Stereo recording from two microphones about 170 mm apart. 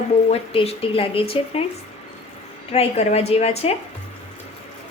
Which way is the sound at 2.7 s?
35° left (ahead or behind).